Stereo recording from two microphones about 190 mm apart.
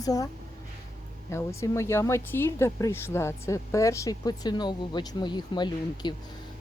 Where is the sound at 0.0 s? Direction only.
20° left (ahead or behind).